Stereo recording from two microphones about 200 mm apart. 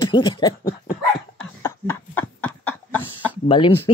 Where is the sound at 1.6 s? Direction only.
10° left (ahead or behind).